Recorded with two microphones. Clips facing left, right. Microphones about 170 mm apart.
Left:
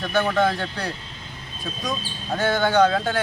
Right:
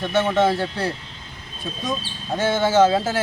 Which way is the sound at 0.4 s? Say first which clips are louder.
Right 3 dB; 30° right (ahead or behind).